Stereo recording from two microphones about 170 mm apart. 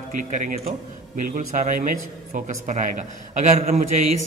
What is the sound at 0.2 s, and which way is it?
A man's voice, 50° right (ahead or behind).